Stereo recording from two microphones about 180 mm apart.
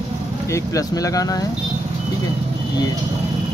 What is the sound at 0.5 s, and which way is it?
Speech, 20° left (ahead or behind).